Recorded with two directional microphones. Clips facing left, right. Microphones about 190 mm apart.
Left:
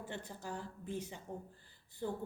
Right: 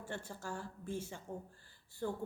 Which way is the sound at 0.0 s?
20° left (ahead or behind).